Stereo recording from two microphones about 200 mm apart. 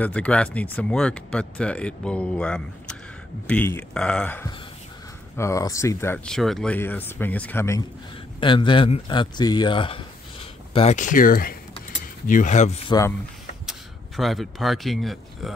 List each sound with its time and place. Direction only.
0.0 s speech: 5° left (ahead or behind)
8.4 s speech: 25° left (ahead or behind)
13.7 s speech: centre (ahead or behind)